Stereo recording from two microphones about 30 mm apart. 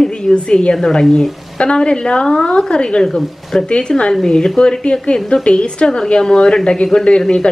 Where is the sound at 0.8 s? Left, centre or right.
Left.